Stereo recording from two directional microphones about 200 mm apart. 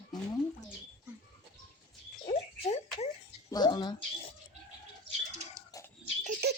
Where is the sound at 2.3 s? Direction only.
30° left (ahead or behind).